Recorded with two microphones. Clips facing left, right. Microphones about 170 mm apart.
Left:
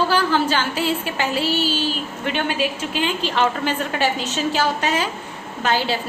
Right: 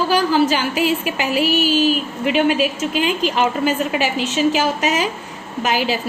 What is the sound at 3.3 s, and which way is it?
A woman's voice, 10° right (ahead or behind).